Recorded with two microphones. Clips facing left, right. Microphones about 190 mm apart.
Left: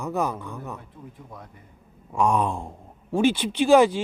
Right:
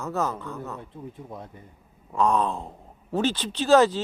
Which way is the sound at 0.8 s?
25° right (ahead or behind).